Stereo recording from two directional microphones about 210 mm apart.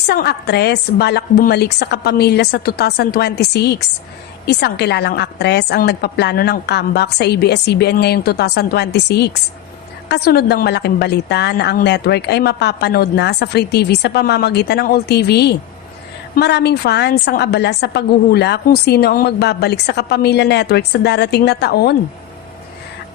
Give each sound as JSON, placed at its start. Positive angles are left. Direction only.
{"t": 0.1, "sound": "a woman's voice", "side_deg": 50}